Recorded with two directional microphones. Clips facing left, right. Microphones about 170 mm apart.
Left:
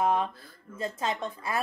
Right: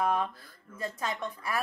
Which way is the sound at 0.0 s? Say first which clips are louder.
Left 2 dB; 25° left (ahead or behind).